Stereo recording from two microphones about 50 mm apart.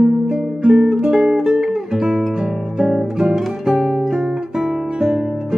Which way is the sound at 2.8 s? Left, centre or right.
Centre.